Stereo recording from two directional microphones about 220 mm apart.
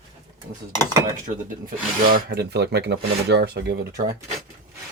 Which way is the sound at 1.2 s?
40° right (ahead or behind).